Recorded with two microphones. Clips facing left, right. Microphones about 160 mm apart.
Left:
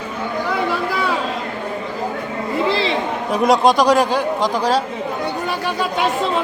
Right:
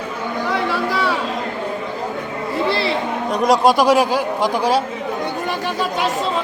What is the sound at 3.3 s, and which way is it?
Speech, centre (ahead or behind).